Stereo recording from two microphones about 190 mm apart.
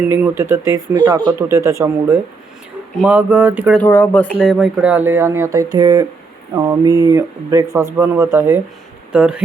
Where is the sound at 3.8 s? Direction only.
10° left (ahead or behind); by 9.4 s 5° right (ahead or behind).